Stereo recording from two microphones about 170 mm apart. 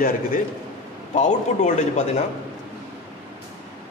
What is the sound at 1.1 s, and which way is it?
A man's voice, 45° left (ahead or behind).